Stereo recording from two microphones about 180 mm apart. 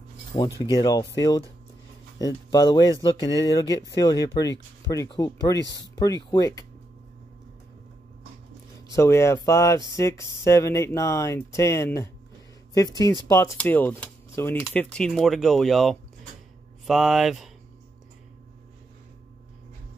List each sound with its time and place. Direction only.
0.6 s speech: 20° left (ahead or behind)
2.1 s speech: 20° left (ahead or behind)
8.9 s speech: 15° left (ahead or behind)
13.4 s speech: 10° left (ahead or behind)